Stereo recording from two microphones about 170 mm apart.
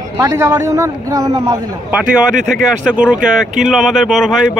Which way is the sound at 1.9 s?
5° right (ahead or behind).